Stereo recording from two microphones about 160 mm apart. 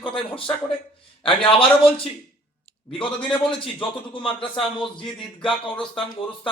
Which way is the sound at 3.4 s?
30° left (ahead or behind).